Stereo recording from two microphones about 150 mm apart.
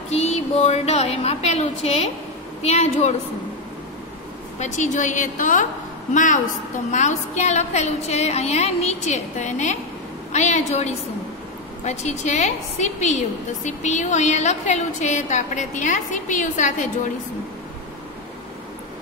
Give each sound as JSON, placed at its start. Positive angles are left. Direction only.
{"t": 0.1, "sound": "a woman's voice", "side_deg": 45}
{"t": 4.6, "sound": "a woman's voice", "side_deg": 55}